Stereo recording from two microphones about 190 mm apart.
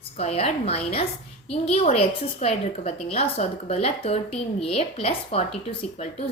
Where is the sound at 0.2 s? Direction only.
35° left (ahead or behind).